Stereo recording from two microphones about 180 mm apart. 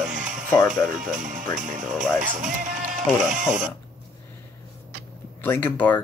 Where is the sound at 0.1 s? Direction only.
45° right (ahead or behind).